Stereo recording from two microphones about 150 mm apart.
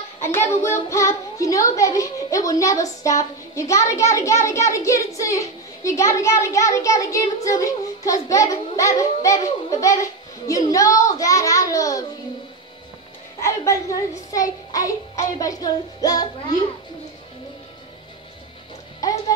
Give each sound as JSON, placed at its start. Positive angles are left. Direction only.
{"t": 0.2, "sound": "a child's voice", "side_deg": 15}
{"t": 13.4, "sound": "a child's voice", "side_deg": 20}